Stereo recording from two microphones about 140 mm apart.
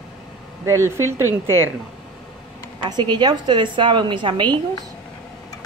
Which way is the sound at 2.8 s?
30° right (ahead or behind).